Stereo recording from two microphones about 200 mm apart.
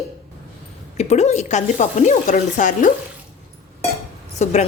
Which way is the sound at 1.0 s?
35° left (ahead or behind).